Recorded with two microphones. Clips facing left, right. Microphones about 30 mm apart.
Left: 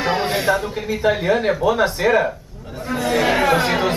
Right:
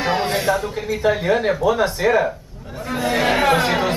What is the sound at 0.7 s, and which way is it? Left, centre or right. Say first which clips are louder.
Speech: even; centre.